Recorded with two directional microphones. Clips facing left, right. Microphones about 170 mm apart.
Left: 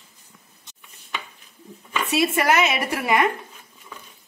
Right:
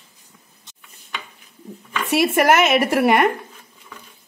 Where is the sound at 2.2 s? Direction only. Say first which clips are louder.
Right 6 dB; 50° right (ahead or behind).